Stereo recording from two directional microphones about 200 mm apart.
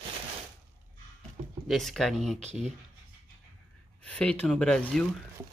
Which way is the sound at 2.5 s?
35° right (ahead or behind).